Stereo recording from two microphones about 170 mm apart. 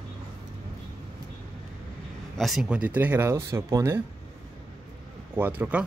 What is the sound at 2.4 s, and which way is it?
Speech, centre (ahead or behind).